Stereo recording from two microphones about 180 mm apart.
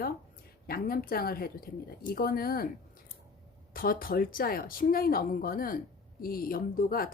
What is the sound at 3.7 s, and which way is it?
A woman's voice, 55° left (ahead or behind).